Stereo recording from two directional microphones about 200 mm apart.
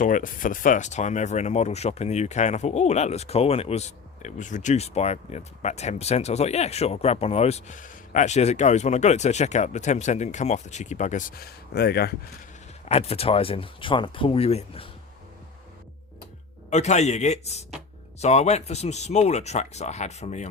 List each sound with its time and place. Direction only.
0.0 s speech: 40° left (ahead or behind)
12.8 s speech: 30° left (ahead or behind)
16.6 s speech: 35° left (ahead or behind)